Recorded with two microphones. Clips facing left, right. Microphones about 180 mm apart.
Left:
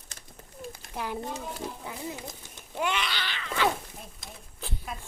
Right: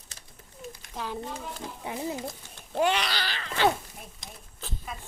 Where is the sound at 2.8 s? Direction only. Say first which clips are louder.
Right 5 dB; 35° right (ahead or behind).